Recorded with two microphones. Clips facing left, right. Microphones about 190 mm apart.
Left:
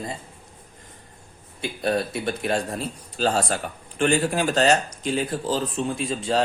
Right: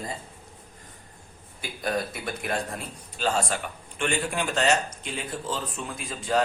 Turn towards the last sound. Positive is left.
turn(degrees=25)  # may be behind; listen again after turning